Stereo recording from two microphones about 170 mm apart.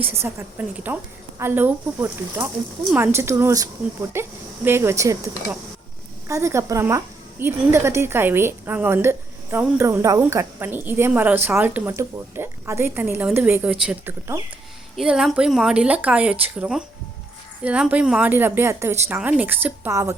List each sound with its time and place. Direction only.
0.2 s a woman's voice: 10° right (ahead or behind)
6.2 s a woman's voice: 15° right (ahead or behind)